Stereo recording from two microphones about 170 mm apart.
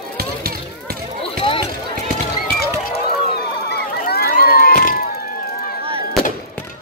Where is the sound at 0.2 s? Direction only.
65° right (ahead or behind).